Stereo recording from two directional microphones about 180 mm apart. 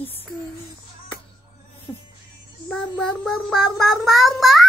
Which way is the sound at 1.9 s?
10° left (ahead or behind).